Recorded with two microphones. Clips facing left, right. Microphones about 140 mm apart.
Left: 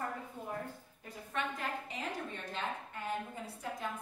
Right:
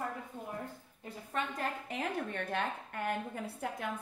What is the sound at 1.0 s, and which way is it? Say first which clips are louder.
Speech: right 1 dB; 35° right (ahead or behind).